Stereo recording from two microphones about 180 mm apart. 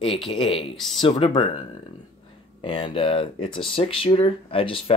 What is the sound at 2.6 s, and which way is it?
Speech, 30° left (ahead or behind).